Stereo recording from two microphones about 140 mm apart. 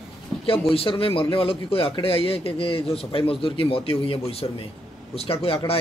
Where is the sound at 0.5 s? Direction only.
40° left (ahead or behind).